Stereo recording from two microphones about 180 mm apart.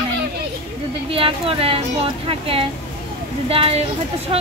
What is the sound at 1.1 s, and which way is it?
Speech, 30° right (ahead or behind).